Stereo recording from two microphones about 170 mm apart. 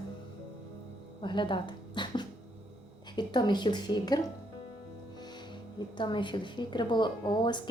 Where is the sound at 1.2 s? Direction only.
30° left (ahead or behind).